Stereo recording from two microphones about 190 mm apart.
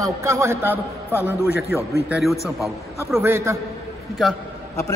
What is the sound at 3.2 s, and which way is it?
Speech, 10° right (ahead or behind).